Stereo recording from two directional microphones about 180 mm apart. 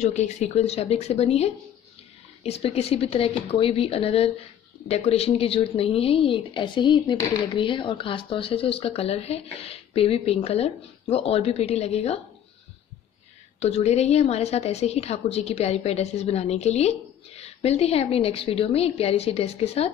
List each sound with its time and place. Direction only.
0.0 s a woman's voice: 40° left (ahead or behind)
13.6 s a woman's voice: 35° left (ahead or behind)